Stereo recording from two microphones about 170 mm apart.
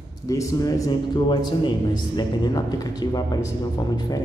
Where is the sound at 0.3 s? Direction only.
20° left (ahead or behind).